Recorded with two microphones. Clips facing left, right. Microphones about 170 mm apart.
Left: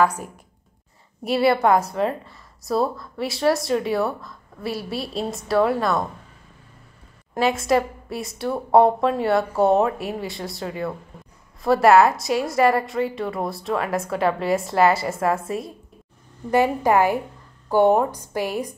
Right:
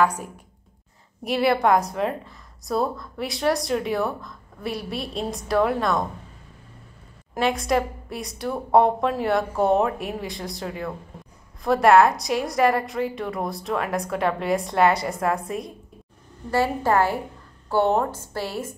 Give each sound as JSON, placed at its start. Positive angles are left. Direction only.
{"t": 1.2, "sound": "a woman's voice", "side_deg": 0}
{"t": 7.3, "sound": "a woman's voice", "side_deg": 0}
{"t": 16.4, "sound": "a woman's voice", "side_deg": 15}